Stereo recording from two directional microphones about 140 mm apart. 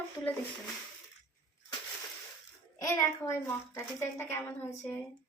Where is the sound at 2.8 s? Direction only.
20° left (ahead or behind).